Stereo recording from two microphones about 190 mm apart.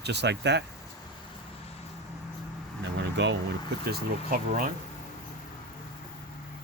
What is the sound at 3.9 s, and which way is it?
Speech, 50° right (ahead or behind).